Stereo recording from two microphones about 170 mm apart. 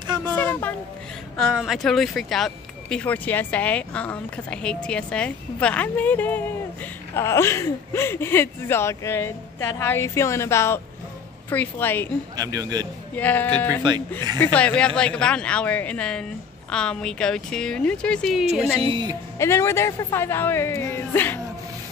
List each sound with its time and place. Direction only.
0.4 s a sound: 10° left (ahead or behind)
1.3 s speech: centre (ahead or behind)
12.4 s a man's voice: 20° right (ahead or behind)
13.1 s speech: 10° left (ahead or behind)
18.8 s a man's voice: 30° right (ahead or behind)
19.3 s speech: 15° left (ahead or behind)